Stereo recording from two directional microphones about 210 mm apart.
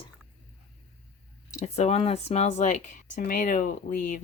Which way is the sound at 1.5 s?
30° left (ahead or behind).